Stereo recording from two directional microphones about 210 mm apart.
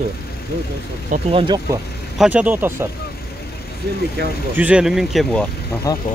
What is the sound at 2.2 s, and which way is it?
Speech, 5° right (ahead or behind).